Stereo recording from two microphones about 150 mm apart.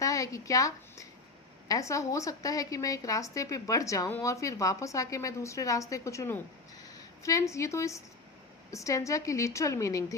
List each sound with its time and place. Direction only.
0.0 s a woman's voice: 20° left (ahead or behind)